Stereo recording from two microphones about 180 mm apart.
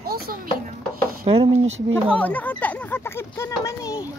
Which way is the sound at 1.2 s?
35° right (ahead or behind).